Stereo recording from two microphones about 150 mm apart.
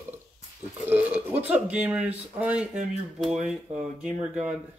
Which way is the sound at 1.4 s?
10° right (ahead or behind).